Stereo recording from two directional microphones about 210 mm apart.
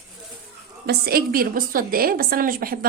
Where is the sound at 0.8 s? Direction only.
45° right (ahead or behind).